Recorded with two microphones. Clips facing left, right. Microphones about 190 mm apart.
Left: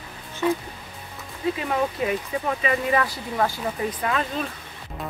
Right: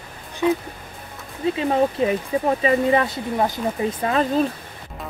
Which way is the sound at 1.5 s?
30° right (ahead or behind).